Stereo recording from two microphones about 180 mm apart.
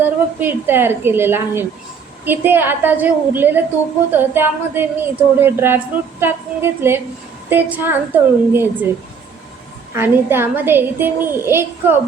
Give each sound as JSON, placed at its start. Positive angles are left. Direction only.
{"t": 0.0, "sound": "speech", "side_deg": -10}
{"t": 9.9, "sound": "speech", "side_deg": -15}